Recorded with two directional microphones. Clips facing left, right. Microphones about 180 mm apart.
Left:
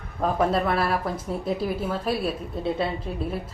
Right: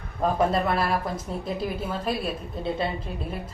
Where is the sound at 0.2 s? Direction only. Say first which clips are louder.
Even; centre (ahead or behind).